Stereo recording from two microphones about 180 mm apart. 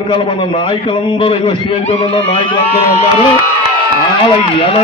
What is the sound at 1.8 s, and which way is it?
Speech, 30° left (ahead or behind).